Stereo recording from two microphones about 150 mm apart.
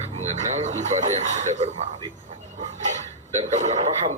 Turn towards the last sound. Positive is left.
turn(degrees=-50)  # may be behind; listen again after turning